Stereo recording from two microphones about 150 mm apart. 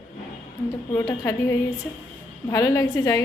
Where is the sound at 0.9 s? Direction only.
20° left (ahead or behind).